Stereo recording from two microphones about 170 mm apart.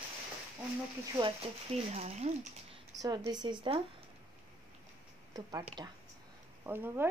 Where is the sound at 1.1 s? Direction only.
30° right (ahead or behind).